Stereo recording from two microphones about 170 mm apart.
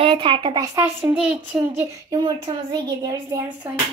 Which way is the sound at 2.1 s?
25° right (ahead or behind).